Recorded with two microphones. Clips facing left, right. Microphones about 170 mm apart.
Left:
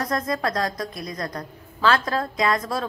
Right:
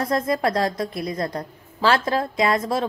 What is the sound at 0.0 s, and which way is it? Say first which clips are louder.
A woman's voice: right 3 dB; 25° right (ahead or behind).